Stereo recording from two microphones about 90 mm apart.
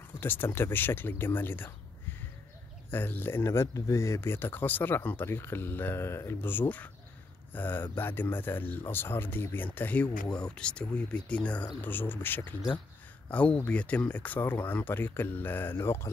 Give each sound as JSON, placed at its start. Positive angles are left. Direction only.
{"t": 0.2, "sound": "speech", "side_deg": 25}